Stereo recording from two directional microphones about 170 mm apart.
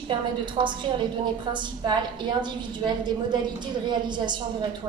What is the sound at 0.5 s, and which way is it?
A woman's voice, 30° right (ahead or behind).